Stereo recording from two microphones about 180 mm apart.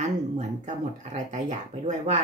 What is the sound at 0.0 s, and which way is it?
Speech, 40° right (ahead or behind).